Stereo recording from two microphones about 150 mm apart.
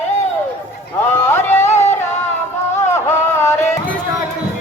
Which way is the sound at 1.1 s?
15° left (ahead or behind).